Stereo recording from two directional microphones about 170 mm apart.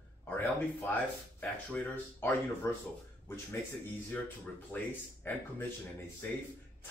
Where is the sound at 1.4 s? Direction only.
Centre (ahead or behind).